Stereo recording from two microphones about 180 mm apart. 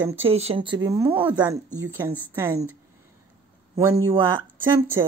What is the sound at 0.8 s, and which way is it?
A woman's voice, 15° right (ahead or behind).